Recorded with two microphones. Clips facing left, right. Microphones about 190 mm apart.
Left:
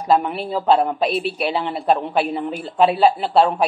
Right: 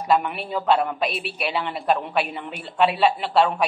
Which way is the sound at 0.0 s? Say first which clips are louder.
Left 3 dB; 35° left (ahead or behind).